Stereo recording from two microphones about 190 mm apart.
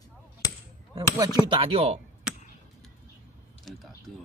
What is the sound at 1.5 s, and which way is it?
Speech, 30° right (ahead or behind).